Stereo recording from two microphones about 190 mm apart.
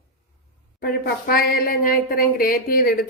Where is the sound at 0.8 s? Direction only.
50° left (ahead or behind).